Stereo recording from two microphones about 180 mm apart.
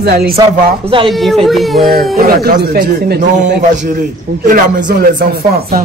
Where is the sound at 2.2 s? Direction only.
60° right (ahead or behind).